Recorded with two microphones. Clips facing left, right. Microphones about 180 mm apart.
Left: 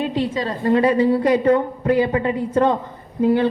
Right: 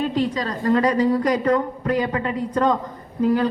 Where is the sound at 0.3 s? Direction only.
25° left (ahead or behind).